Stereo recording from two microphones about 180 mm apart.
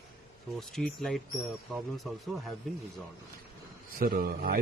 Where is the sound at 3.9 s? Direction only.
55° right (ahead or behind).